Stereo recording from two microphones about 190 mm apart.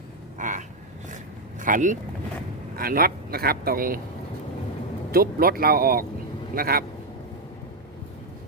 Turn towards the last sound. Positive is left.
turn(degrees=-50)  # may be behind; listen again after turning